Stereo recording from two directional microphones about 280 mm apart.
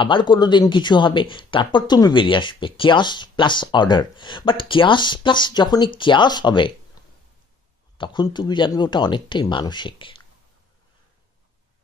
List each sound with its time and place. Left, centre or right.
0.0 s speech: centre
8.0 s speech: centre